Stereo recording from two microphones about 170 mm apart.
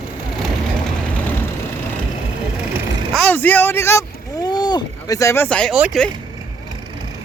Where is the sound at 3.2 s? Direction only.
10° left (ahead or behind).